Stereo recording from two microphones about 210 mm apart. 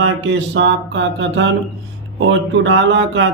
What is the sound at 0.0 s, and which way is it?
Speech, 60° right (ahead or behind).